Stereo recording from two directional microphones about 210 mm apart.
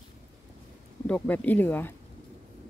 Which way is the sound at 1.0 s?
5° left (ahead or behind).